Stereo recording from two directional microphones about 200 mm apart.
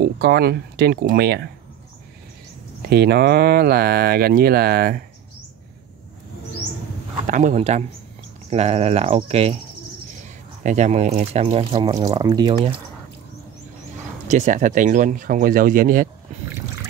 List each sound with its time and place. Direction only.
0.0 s speech: 50° right (ahead or behind)
2.9 s speech: 55° right (ahead or behind)
7.2 s speech: 35° right (ahead or behind)
10.6 s speech: 35° right (ahead or behind)
14.2 s speech: 35° right (ahead or behind)